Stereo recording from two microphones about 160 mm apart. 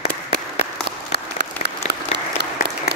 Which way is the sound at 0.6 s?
90° right.